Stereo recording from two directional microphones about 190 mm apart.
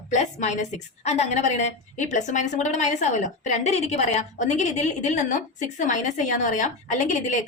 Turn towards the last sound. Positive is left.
turn(degrees=40)  # may be behind; listen again after turning